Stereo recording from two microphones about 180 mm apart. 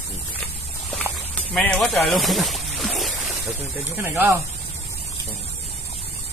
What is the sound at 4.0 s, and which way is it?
Speech, 10° right (ahead or behind).